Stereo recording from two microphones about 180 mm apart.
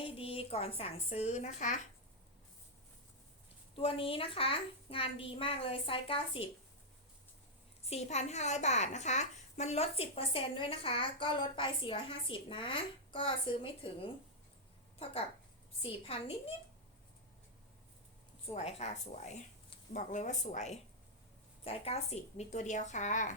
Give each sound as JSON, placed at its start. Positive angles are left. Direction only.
{"t": 0.0, "sound": "a woman's voice", "side_deg": 30}
{"t": 3.8, "sound": "a woman's voice", "side_deg": 30}
{"t": 7.9, "sound": "a woman's voice", "side_deg": 35}
{"t": 15.8, "sound": "a woman's voice", "side_deg": 35}
{"t": 18.5, "sound": "a woman's voice", "side_deg": 35}